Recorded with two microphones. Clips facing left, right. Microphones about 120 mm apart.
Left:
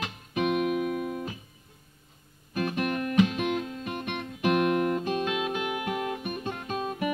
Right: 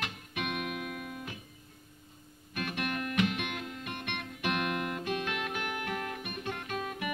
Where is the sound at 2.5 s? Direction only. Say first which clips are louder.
Left 7 dB; 30° left (ahead or behind).